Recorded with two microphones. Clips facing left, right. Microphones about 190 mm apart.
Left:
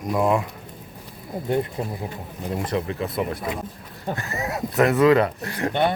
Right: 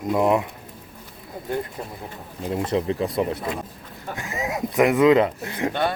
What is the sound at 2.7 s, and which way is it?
Speech, 25° right (ahead or behind).